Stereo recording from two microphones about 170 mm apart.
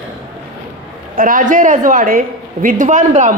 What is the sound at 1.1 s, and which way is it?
A man's voice, 55° right (ahead or behind).